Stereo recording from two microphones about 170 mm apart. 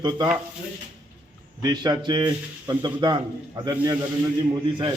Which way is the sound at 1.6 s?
25° right (ahead or behind).